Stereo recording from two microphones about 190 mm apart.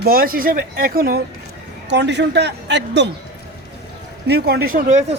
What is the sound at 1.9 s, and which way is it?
Speech, 65° right (ahead or behind).